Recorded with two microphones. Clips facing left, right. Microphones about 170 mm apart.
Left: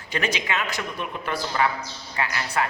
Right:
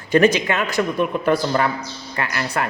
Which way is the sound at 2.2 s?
60° right (ahead or behind).